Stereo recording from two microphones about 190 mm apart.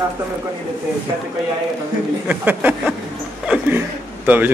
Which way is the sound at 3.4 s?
10° right (ahead or behind).